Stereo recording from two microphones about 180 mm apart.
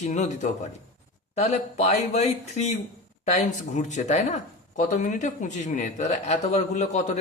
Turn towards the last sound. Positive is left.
turn(degrees=40)  # may be behind; listen again after turning